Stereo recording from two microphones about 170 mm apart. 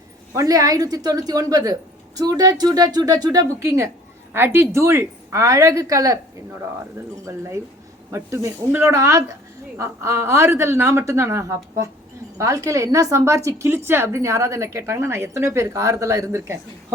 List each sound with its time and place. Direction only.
0.3 s a woman's voice: 20° right (ahead or behind)
7.3 s a woman's voice: 15° right (ahead or behind)